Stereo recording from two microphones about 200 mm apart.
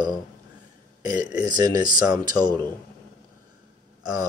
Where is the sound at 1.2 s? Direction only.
5° right (ahead or behind).